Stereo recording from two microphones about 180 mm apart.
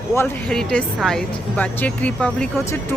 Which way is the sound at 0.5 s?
5° left (ahead or behind).